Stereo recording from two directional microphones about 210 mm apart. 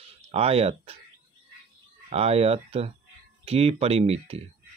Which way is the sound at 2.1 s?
30° right (ahead or behind).